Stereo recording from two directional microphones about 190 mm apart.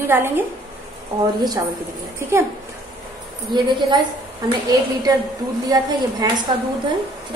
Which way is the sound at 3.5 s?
20° right (ahead or behind).